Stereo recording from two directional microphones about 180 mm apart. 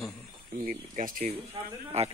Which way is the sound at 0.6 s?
45° right (ahead or behind).